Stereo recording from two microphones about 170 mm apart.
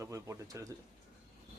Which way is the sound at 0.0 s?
15° right (ahead or behind).